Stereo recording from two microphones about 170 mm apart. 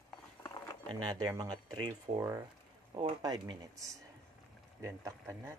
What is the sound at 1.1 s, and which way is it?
Speech, 20° right (ahead or behind).